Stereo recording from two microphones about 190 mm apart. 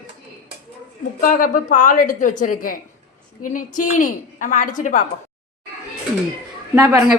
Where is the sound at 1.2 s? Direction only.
45° left (ahead or behind).